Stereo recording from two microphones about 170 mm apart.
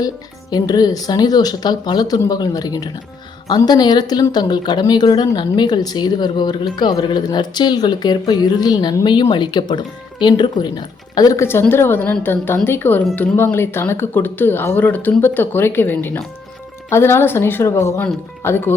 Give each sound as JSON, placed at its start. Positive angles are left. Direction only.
{"t": 0.5, "sound": "a woman's voice", "side_deg": 25}